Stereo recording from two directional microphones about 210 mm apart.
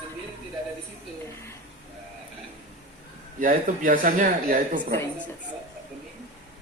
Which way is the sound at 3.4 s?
40° right (ahead or behind).